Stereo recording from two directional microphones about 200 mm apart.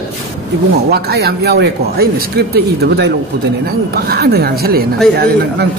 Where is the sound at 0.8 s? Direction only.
55° right (ahead or behind).